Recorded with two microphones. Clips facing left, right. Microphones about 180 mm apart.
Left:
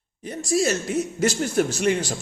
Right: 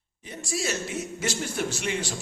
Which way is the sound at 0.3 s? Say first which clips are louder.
Left 8 dB; 40° left (ahead or behind).